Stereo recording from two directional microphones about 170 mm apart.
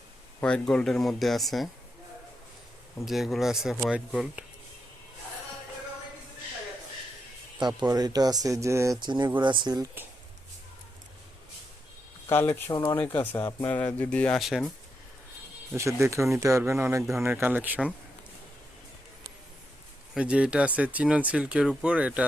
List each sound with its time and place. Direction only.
0.4 s speech: 5° left (ahead or behind)
3.1 s speech: centre (ahead or behind)
7.6 s speech: 25° right (ahead or behind)
12.3 s speech: 15° left (ahead or behind)
15.7 s speech: 15° right (ahead or behind)
20.1 s speech: 5° right (ahead or behind)